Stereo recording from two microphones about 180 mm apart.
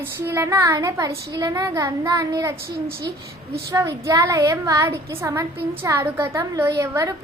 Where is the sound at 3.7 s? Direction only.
15° right (ahead or behind).